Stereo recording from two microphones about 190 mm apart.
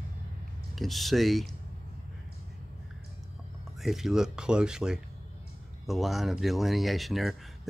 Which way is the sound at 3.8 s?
Centre (ahead or behind).